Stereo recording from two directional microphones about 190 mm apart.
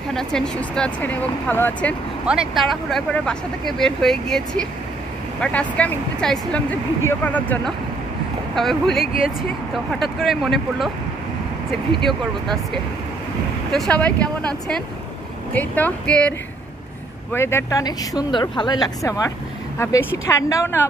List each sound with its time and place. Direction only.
0.1 s speech: 5° left (ahead or behind)
9.0 s speech: 50° left (ahead or behind)
9.9 s speech: centre (ahead or behind)
12.1 s speech: centre (ahead or behind)